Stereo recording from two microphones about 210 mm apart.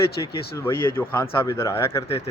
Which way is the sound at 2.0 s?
25° left (ahead or behind).